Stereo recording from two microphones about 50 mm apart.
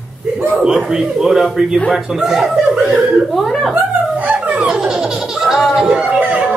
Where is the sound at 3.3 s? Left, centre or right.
Centre.